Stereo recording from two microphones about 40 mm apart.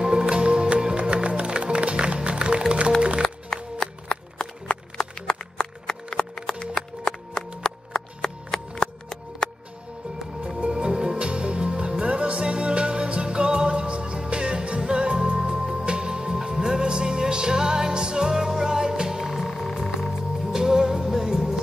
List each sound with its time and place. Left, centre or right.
0.0 s music: right
3.4 s music: centre
7.1 s a sound: centre
10.6 s music: right